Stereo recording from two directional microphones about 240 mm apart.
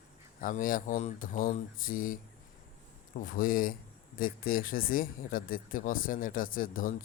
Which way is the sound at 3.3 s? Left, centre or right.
Left.